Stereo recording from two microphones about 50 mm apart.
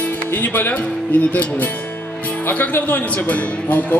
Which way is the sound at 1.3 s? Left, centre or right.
Left.